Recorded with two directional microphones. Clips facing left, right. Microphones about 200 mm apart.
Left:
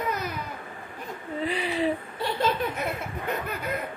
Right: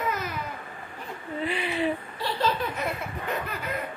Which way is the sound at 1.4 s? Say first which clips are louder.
Left 1 dB; 35° left (ahead or behind).